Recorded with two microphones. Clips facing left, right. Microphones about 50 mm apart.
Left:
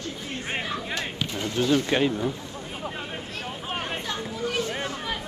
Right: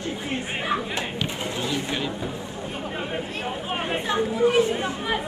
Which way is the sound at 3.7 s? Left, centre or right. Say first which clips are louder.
Right 5 dB; centre.